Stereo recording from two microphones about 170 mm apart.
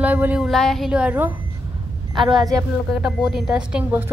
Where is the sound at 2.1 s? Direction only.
25° right (ahead or behind).